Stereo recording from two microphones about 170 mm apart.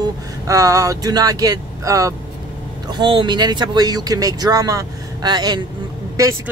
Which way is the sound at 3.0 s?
30° right (ahead or behind).